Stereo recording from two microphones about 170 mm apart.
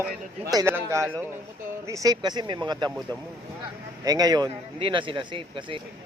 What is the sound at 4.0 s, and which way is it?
Speech, 20° right (ahead or behind).